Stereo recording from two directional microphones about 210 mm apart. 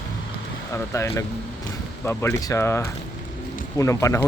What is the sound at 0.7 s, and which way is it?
A man's voice, 15° left (ahead or behind).